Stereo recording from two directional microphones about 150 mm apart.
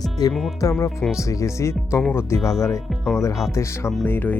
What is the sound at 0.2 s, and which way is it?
Speech, 25° left (ahead or behind).